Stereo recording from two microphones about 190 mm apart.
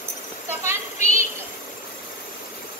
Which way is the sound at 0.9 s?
35° left (ahead or behind).